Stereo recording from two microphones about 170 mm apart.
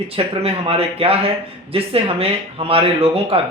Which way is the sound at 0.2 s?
35° right (ahead or behind).